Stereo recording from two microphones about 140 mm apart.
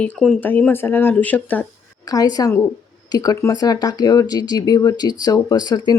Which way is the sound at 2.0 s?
25° left (ahead or behind).